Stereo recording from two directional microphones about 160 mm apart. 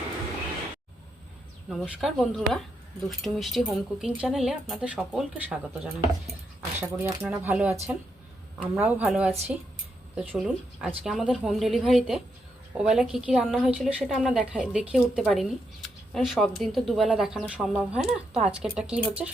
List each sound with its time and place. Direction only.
1.7 s speech: centre (ahead or behind)